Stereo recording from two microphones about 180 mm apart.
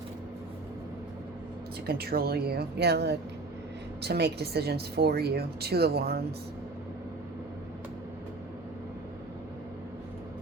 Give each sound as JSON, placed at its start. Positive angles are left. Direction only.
{"t": 1.9, "sound": "speech", "side_deg": -60}